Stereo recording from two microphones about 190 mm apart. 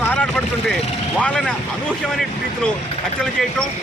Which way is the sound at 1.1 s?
5° left (ahead or behind).